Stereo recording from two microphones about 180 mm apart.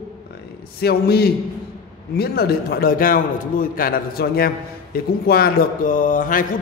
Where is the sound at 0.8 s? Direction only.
60° left (ahead or behind).